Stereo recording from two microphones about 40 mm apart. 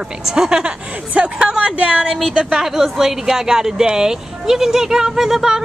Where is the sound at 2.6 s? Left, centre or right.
Centre.